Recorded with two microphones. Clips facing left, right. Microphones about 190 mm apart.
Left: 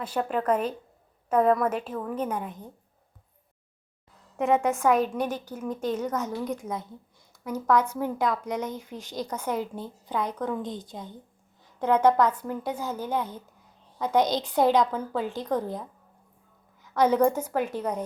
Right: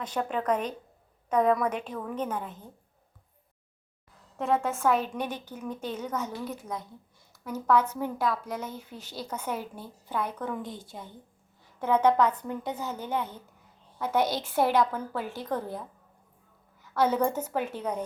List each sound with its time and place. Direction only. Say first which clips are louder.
0.0 s a woman's voice: left 3 dB; 5° left (ahead or behind)
4.4 s a woman's voice: left 4 dB; 15° left (ahead or behind)
5.8 s a woman's voice: left 5 dB; 10° right (ahead or behind)
7.4 s a woman's voice: left 1 dB; 10° left (ahead or behind)
16.9 s a woman's voice: left 4 dB; 15° left (ahead or behind)